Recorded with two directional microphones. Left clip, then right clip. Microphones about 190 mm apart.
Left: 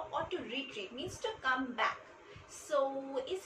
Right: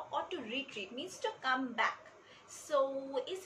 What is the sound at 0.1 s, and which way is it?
A woman's voice, 20° right (ahead or behind).